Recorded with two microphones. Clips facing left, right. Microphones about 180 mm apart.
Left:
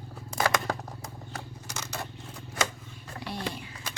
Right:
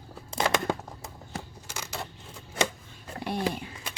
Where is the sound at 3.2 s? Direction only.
55° right (ahead or behind).